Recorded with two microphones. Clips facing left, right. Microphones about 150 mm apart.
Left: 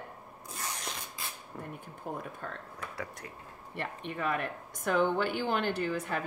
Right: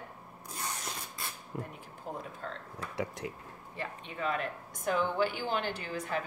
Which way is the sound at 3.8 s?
60° left (ahead or behind).